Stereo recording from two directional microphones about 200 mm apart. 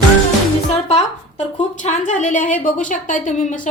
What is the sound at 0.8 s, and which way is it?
A woman's voice, 35° left (ahead or behind).